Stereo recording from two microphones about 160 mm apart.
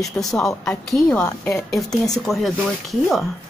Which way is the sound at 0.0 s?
Centre (ahead or behind).